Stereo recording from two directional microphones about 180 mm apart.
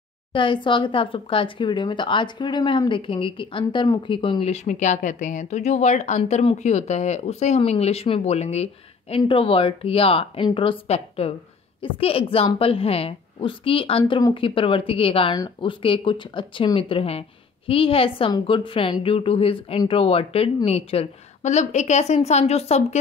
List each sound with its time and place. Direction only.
0.3 s speech: 25° left (ahead or behind)